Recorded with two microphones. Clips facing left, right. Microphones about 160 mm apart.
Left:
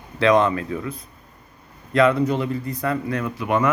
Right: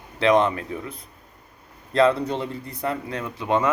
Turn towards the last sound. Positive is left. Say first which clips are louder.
# left 2 dB
turn(degrees=-20)  # may be behind; listen again after turning